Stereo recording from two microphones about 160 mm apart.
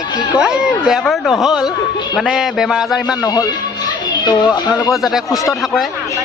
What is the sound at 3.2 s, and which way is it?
Speech, 25° left (ahead or behind).